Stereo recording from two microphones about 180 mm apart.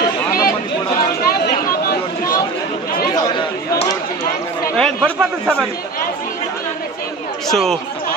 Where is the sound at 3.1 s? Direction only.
25° left (ahead or behind).